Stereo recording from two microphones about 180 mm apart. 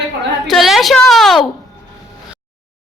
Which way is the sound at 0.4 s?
Centre (ahead or behind).